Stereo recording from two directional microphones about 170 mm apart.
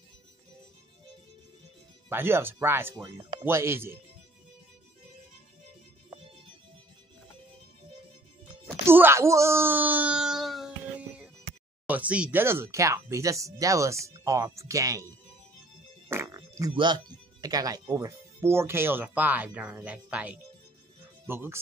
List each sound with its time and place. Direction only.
2.0 s speech: 15° right (ahead or behind)
8.5 s wail: 10° right (ahead or behind)
11.9 s speech: 10° right (ahead or behind)
16.1 s music: 15° right (ahead or behind)
16.7 s speech: 25° right (ahead or behind)